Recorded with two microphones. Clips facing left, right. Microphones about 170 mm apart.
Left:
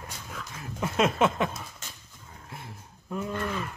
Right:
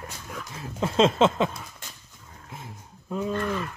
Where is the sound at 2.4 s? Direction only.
20° right (ahead or behind).